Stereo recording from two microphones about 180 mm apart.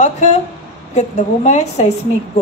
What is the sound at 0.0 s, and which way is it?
A woman's voice, 40° left (ahead or behind).